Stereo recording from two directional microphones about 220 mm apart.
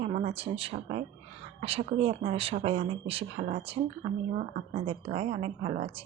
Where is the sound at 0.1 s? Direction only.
30° right (ahead or behind).